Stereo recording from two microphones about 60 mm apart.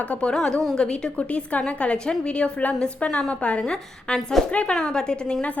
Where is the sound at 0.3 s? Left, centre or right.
Centre.